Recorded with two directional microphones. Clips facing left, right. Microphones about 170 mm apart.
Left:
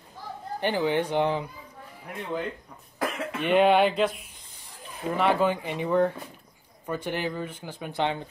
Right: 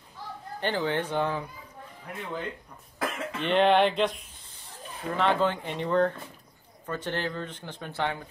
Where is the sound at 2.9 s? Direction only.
10° left (ahead or behind).